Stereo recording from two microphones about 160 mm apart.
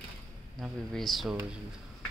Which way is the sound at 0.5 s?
Centre (ahead or behind).